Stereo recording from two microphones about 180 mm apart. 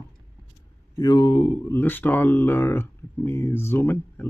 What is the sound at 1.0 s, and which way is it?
Speech, 25° left (ahead or behind).